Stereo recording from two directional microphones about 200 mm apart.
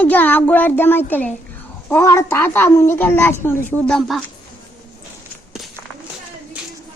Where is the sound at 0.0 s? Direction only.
10° left (ahead or behind).